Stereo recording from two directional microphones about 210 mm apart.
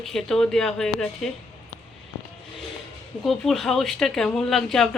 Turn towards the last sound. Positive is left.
turn(degrees=0)  # may be behind; listen again after turning